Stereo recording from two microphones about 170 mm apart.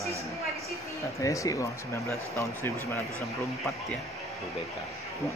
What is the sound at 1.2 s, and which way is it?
Speech, 20° left (ahead or behind).